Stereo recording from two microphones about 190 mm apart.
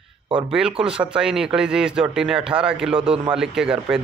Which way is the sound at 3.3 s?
5° right (ahead or behind).